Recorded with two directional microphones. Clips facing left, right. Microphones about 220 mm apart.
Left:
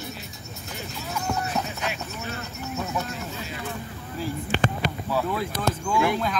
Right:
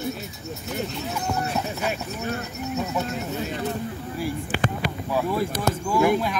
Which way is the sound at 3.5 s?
40° right (ahead or behind).